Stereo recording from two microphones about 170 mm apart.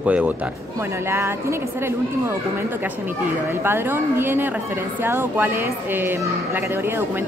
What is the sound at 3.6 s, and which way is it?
A woman's voice, 15° right (ahead or behind).